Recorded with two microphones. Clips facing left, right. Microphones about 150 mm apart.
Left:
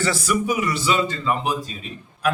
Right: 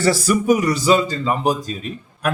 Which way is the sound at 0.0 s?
35° right (ahead or behind).